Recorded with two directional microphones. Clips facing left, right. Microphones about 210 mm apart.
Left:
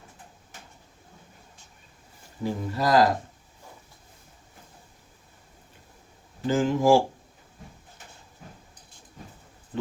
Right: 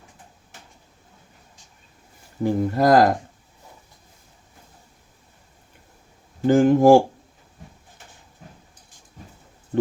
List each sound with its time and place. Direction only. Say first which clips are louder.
2.4 s speech: right 8 dB; 50° right (ahead or behind)
6.5 s speech: right 7 dB; 55° right (ahead or behind)